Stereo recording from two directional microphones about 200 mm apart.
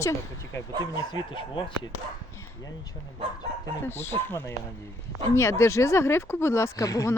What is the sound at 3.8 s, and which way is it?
Speech, 10° left (ahead or behind).